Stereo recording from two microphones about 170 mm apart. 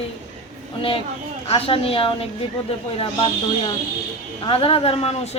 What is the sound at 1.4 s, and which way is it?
Speech, 35° left (ahead or behind).